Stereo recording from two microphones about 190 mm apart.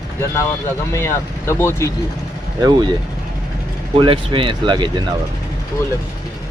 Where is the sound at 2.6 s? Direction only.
20° right (ahead or behind).